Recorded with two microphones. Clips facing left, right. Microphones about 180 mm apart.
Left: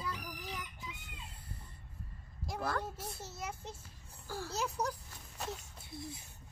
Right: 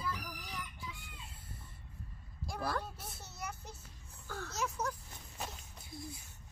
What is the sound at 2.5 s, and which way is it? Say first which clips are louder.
Speech: left 1 dB; 5° right (ahead or behind).